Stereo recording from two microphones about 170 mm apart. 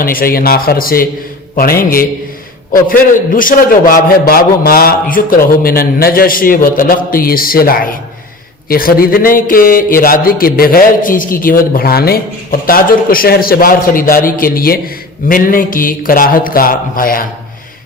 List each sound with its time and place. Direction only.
0.0 s speech: 60° left (ahead or behind)